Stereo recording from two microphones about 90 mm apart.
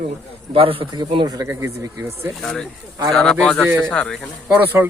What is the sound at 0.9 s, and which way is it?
Speech, 60° right (ahead or behind).